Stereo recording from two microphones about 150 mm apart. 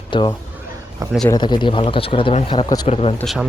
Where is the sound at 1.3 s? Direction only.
30° left (ahead or behind).